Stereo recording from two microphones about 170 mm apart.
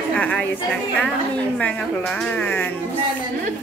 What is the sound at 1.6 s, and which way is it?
A woman's voice, 5° left (ahead or behind).